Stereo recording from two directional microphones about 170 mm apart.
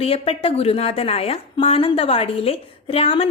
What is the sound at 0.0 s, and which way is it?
A woman's voice, 35° left (ahead or behind).